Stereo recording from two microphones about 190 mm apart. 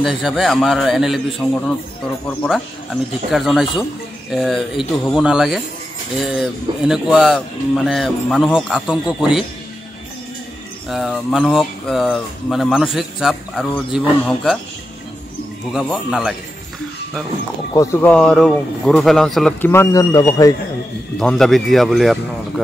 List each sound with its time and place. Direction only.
0.0 s speech: centre (ahead or behind)
1.4 s a man's voice: 10° left (ahead or behind)
10.9 s speech: centre (ahead or behind)
15.8 s speech: centre (ahead or behind)
17.7 s speech: 10° left (ahead or behind)
19.7 s a man's voice: 15° left (ahead or behind)
21.2 s speech: 5° left (ahead or behind)